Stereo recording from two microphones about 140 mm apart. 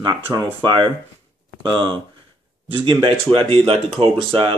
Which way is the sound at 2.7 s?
40° right (ahead or behind).